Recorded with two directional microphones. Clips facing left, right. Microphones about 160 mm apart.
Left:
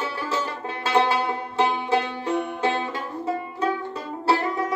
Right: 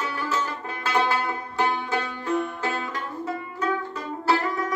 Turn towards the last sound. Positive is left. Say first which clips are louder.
# left 1 dB
turn(degrees=30)  # may be behind; listen again after turning